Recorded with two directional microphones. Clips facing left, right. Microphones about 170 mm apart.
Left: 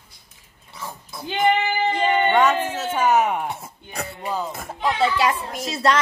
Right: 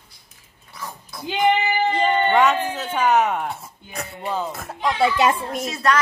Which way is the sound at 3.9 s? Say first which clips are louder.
Left 1 dB; 30° left (ahead or behind).